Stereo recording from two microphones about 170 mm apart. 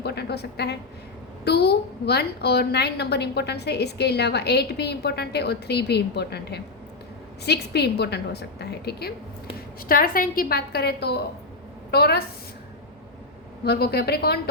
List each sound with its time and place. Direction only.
0.0 s a woman's voice: 75° left (ahead or behind)
9.6 s a woman's voice: 60° left (ahead or behind)
13.7 s a woman's voice: 70° left (ahead or behind)